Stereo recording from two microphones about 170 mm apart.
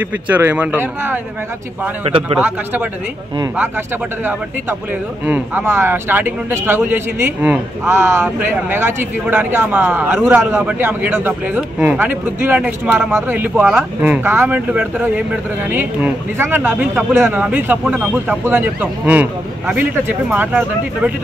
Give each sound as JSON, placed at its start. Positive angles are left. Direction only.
{"t": 0.3, "sound": "speech", "side_deg": -10}
{"t": 2.0, "sound": "a man's voice", "side_deg": -30}
{"t": 2.4, "sound": "speech", "side_deg": -10}
{"t": 4.2, "sound": "speech", "side_deg": -10}